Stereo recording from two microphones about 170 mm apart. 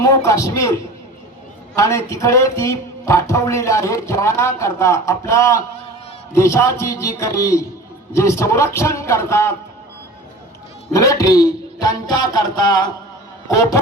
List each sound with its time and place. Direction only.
0.0 s speech: 20° left (ahead or behind)
1.7 s speech: 20° left (ahead or behind)
10.9 s speech: 20° left (ahead or behind)